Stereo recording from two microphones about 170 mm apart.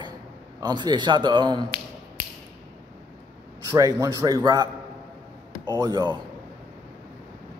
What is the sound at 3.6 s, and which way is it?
A man's voice, 20° right (ahead or behind).